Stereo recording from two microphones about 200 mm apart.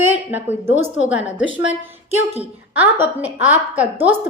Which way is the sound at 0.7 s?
75° left (ahead or behind).